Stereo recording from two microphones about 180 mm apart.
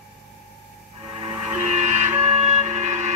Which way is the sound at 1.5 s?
40° right (ahead or behind).